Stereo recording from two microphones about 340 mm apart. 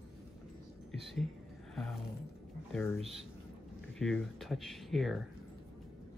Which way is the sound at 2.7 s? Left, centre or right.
Centre.